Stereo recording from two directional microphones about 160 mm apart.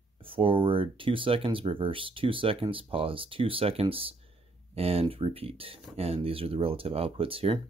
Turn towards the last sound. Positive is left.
turn(degrees=-35)  # may be behind; listen again after turning